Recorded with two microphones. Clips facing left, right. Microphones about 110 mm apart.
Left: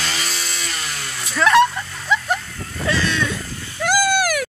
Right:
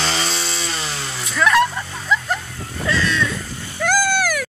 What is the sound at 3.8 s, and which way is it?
Cat, 5° left (ahead or behind).